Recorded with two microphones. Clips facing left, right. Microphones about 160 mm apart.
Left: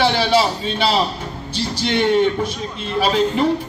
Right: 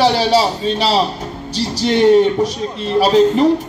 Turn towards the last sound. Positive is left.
turn(degrees=-40)  # may be behind; listen again after turning